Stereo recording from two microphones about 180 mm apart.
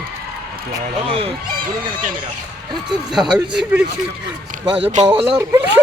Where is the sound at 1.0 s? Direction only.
30° right (ahead or behind).